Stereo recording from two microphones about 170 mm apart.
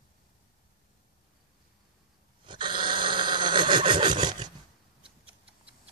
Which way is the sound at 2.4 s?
25° right (ahead or behind).